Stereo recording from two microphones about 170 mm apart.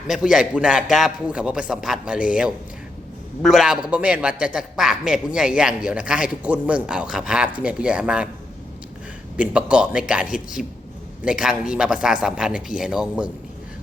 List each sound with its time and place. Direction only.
0.1 s a man's voice: 5° right (ahead or behind)
9.4 s a man's voice: 5° right (ahead or behind)